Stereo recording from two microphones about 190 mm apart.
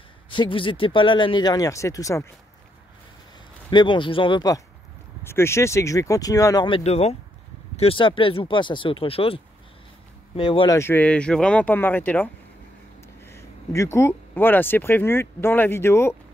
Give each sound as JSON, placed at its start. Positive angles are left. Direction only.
{"t": 0.3, "sound": "speech", "side_deg": 25}
{"t": 3.7, "sound": "speech", "side_deg": 25}
{"t": 5.2, "sound": "speech", "side_deg": 15}
{"t": 10.8, "sound": "speech", "side_deg": 10}